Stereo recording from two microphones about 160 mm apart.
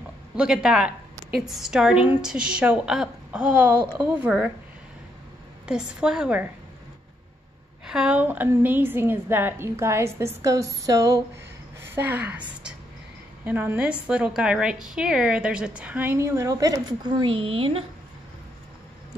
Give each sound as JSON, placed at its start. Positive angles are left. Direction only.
{"t": 0.4, "sound": "a woman's voice", "side_deg": -5}
{"t": 5.7, "sound": "a woman's voice", "side_deg": -5}
{"t": 7.8, "sound": "a woman's voice", "side_deg": -5}